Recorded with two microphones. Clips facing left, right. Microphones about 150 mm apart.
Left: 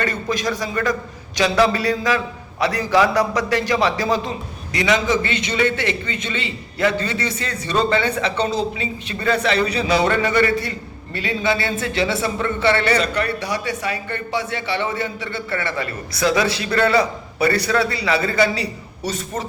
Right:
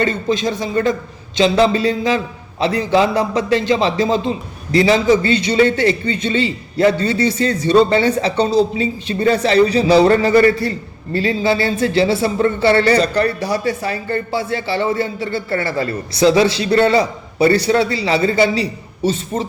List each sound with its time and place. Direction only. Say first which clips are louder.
0.0 s a man's voice: right 5 dB; 25° right (ahead or behind)